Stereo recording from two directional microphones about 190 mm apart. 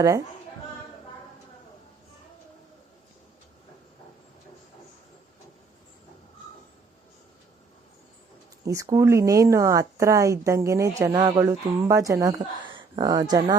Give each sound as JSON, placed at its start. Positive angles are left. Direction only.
{"t": 8.6, "sound": "a woman's voice", "side_deg": -15}